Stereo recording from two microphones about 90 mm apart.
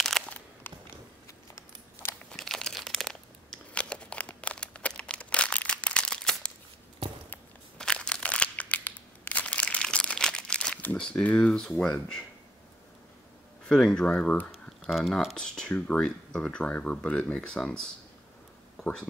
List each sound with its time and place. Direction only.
0.2 s crunch: 5° left (ahead or behind)
0.7 s a sound: 20° left (ahead or behind)
2.3 s crumpling: 5° left (ahead or behind)
7.7 s a sound: 10° left (ahead or behind)
11.0 s speech: 10° left (ahead or behind)
13.7 s speech: 10° left (ahead or behind)